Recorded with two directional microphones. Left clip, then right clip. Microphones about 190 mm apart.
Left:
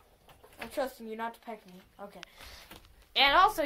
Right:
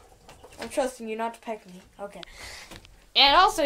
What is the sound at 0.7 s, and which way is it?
Speech, 5° right (ahead or behind).